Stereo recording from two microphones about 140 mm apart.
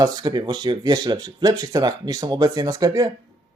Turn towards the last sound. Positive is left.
turn(degrees=-25)  # may be behind; listen again after turning